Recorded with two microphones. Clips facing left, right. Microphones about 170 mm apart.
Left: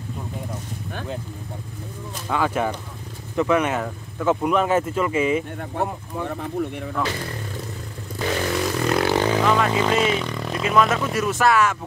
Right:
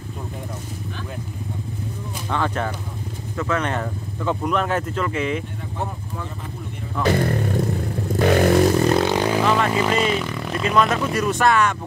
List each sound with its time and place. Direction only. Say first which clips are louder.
2.3 s speech: left 2 dB; 10° left (ahead or behind)
7.1 s vehicle: right 10 dB; 55° right (ahead or behind)
8.7 s speech: right 2 dB; 25° right (ahead or behind); by 11.7 s 5° left (ahead or behind)